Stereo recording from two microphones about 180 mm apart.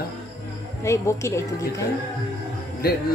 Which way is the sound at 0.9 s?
15° left (ahead or behind).